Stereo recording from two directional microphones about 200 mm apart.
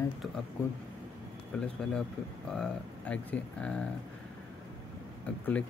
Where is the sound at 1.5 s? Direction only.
5° left (ahead or behind).